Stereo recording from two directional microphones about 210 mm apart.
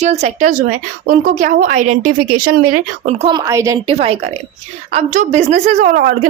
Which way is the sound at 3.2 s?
20° right (ahead or behind).